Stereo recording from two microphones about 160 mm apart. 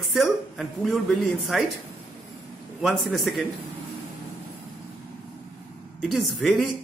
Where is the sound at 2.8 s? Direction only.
Centre (ahead or behind).